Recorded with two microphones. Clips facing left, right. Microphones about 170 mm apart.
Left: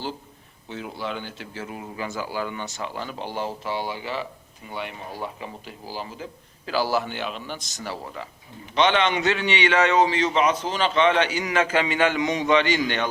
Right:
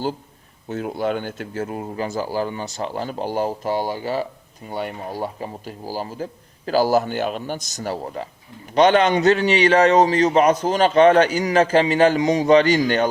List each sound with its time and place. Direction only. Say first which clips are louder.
0.7 s a man's voice: right 8 dB; 50° right (ahead or behind)